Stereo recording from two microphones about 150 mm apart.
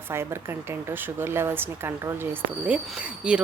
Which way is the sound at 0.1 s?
15° right (ahead or behind).